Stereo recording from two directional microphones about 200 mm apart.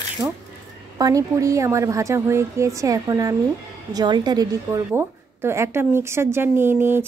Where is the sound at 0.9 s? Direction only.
15° right (ahead or behind).